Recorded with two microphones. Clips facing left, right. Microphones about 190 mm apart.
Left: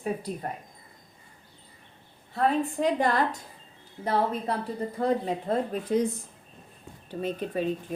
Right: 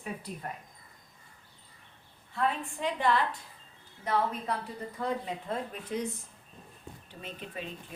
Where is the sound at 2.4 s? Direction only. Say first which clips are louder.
Left 7 dB; 40° left (ahead or behind).